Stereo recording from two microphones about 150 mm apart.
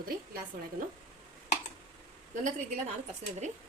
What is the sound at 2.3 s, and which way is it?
Speech, 55° right (ahead or behind).